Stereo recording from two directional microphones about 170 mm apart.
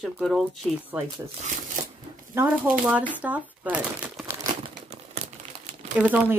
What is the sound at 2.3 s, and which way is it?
Speech, 10° right (ahead or behind).